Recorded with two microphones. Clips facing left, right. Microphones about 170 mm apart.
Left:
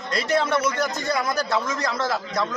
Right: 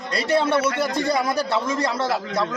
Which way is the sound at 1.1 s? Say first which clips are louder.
Right 2 dB; 30° right (ahead or behind).